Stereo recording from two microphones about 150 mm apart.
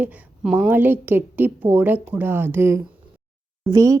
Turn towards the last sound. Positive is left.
turn(degrees=-20)  # may be behind; listen again after turning